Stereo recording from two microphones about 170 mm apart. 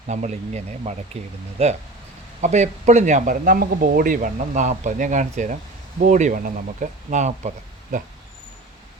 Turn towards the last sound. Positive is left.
turn(degrees=-45)  # may be behind; listen again after turning